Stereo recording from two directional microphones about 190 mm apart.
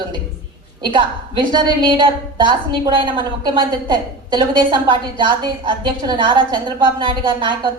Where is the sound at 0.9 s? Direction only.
25° right (ahead or behind).